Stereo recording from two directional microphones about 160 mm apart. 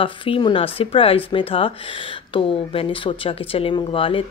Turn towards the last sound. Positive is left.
turn(degrees=35)  # may be behind; listen again after turning